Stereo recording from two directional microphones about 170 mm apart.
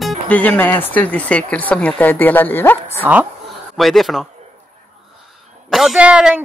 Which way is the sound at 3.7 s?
Centre (ahead or behind).